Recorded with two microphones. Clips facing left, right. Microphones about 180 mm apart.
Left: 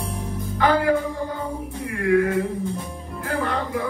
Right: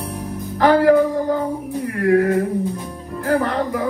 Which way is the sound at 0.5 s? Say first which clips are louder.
Right 7 dB; 45° right (ahead or behind).